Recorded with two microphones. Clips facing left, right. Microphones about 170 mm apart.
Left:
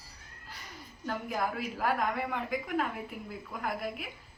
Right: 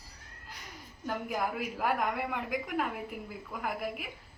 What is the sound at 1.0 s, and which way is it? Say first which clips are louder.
A woman's voice: even; 10° right (ahead or behind).